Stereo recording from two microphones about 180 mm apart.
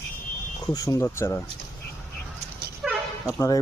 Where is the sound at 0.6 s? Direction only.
20° left (ahead or behind).